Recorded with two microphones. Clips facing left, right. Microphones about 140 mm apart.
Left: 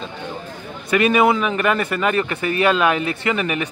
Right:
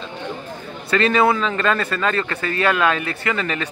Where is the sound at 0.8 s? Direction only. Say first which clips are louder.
Left 1 dB; 15° left (ahead or behind).